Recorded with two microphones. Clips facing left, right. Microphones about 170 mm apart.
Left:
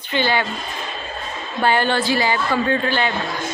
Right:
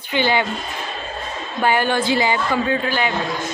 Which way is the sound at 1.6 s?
10° right (ahead or behind).